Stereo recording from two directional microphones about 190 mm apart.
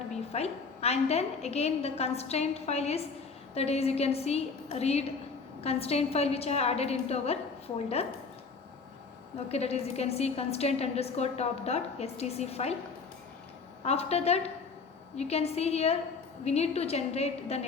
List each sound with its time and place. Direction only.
0.1 s a woman's voice: 35° left (ahead or behind)
9.5 s a woman's voice: 35° left (ahead or behind)
13.8 s a woman's voice: 35° left (ahead or behind)